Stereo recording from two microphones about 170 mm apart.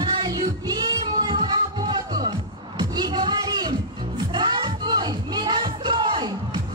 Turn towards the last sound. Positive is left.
turn(degrees=-25)  # may be behind; listen again after turning